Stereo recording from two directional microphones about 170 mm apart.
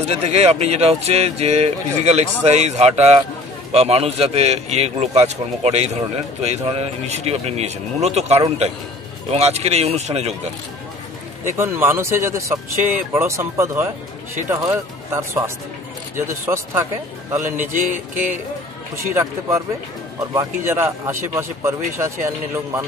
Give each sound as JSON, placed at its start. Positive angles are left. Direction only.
{"t": 0.1, "sound": "speech", "side_deg": -40}
{"t": 11.4, "sound": "speech", "side_deg": -15}
{"t": 19.0, "sound": "speech", "side_deg": -15}